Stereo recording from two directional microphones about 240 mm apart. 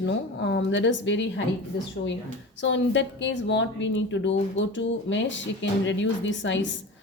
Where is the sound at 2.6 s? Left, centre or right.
Left.